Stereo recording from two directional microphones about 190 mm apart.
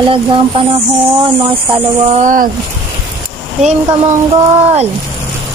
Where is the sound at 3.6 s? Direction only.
35° right (ahead or behind).